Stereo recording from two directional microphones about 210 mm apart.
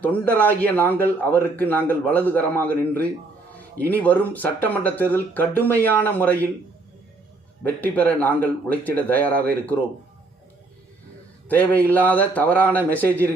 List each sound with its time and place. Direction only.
0.0 s speech: 10° left (ahead or behind)
7.8 s speech: 5° left (ahead or behind)
11.4 s speech: 5° left (ahead or behind)